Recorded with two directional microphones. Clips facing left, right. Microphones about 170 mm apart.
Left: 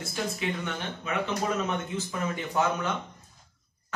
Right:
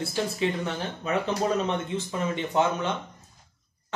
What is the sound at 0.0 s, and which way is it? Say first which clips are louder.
Speech: right 5 dB; 30° right (ahead or behind).